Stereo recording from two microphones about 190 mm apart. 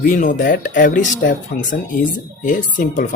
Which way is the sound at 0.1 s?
45° left (ahead or behind).